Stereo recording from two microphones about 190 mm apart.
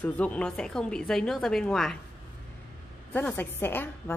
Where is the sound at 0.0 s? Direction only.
5° left (ahead or behind).